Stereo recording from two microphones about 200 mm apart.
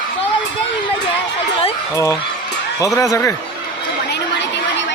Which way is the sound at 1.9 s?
15° left (ahead or behind).